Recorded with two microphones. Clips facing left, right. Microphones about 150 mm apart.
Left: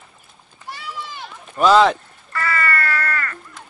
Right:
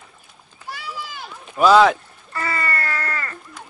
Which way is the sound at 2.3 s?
20° right (ahead or behind).